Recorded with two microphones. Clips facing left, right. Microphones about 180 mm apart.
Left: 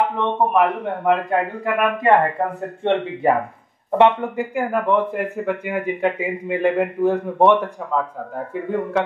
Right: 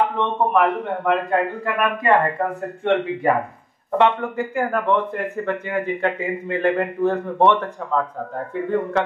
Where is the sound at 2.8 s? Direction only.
25° left (ahead or behind).